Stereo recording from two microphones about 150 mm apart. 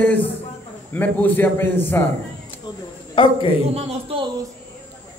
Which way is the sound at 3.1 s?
35° left (ahead or behind).